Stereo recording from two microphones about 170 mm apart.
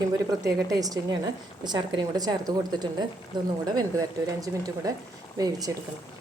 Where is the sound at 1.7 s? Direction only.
25° right (ahead or behind).